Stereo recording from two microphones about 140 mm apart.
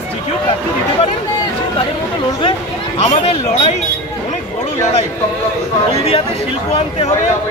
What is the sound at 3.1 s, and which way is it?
Speech, 55° left (ahead or behind).